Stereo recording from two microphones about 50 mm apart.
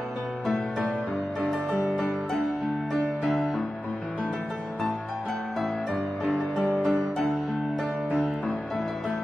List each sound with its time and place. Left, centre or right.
1.4 s music: centre
2.9 s music: centre
6.3 s music: centre
8.1 s music: centre